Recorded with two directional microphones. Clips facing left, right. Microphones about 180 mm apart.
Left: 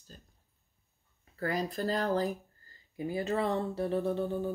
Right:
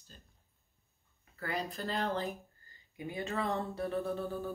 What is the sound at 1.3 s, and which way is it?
Speech, 40° left (ahead or behind).